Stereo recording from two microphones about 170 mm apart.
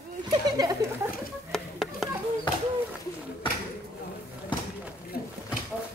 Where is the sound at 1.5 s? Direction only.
Centre (ahead or behind).